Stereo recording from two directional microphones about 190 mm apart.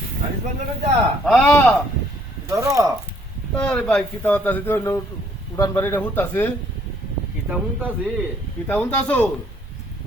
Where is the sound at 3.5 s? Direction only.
5° left (ahead or behind).